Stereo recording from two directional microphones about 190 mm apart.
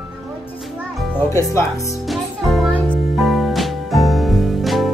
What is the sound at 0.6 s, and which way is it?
Music, centre (ahead or behind).